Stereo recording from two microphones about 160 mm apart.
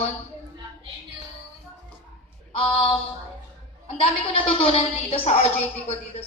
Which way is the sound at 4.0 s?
35° left (ahead or behind).